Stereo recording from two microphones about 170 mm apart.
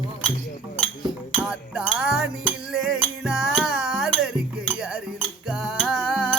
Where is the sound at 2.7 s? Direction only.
5° right (ahead or behind).